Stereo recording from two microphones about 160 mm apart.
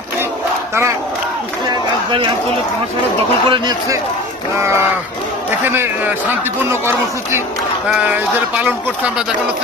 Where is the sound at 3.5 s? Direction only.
25° right (ahead or behind).